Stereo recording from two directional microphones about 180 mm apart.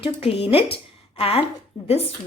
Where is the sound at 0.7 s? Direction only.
30° left (ahead or behind).